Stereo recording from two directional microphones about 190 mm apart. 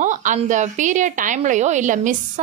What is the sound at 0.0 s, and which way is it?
A woman's voice, 40° right (ahead or behind).